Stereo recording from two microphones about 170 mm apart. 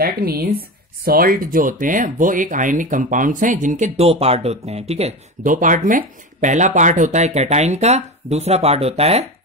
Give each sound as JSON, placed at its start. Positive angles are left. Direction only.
{"t": 0.0, "sound": "speech", "side_deg": -60}